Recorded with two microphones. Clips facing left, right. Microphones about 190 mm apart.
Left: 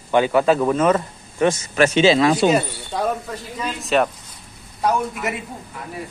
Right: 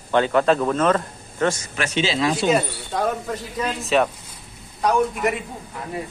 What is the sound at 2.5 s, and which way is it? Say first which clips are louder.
A man's voice: left 1 dB; centre (ahead or behind).